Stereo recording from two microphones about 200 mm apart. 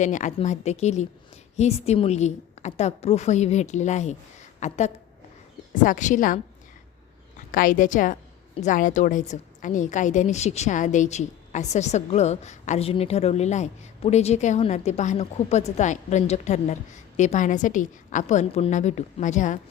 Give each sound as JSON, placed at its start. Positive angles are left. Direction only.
{"t": 0.0, "sound": "a woman's voice", "side_deg": 40}
{"t": 5.8, "sound": "a woman's voice", "side_deg": 40}
{"t": 7.5, "sound": "a woman's voice", "side_deg": 45}